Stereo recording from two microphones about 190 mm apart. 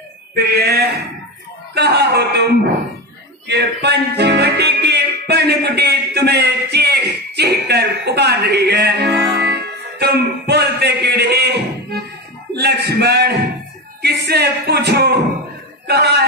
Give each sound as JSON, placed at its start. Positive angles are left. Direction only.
{"t": 0.5, "sound": "a sound", "side_deg": -55}
{"t": 3.4, "sound": "music", "side_deg": -60}
{"t": 9.3, "sound": "speech", "side_deg": -60}